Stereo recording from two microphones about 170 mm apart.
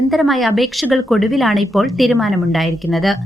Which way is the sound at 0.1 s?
Centre (ahead or behind).